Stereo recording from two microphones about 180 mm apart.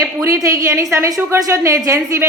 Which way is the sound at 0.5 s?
15° right (ahead or behind).